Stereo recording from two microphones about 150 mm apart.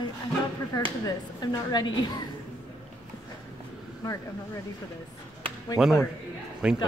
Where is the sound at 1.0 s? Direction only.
25° left (ahead or behind).